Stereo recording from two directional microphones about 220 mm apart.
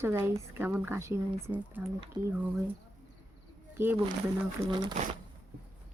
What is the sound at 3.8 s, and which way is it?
Speech, 10° right (ahead or behind).